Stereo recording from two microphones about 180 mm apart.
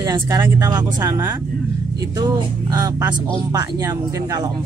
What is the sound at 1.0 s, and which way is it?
Speech, 15° right (ahead or behind).